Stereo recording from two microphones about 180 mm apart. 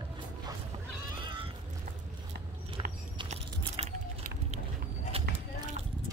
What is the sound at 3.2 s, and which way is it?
Biting, 40° right (ahead or behind).